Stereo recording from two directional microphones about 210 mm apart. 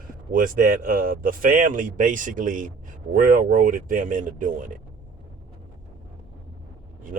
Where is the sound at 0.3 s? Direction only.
40° right (ahead or behind).